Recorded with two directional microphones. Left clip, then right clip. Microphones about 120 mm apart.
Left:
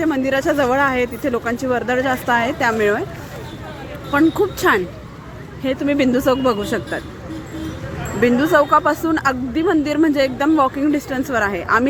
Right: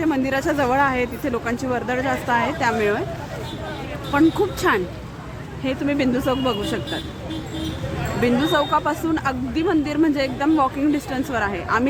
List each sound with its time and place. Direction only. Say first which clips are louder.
0.0 s speech: left 3 dB; 25° left (ahead or behind)
4.1 s a woman's voice: left 2 dB; 30° left (ahead or behind)
8.2 s a woman's voice: left 5 dB; 35° left (ahead or behind)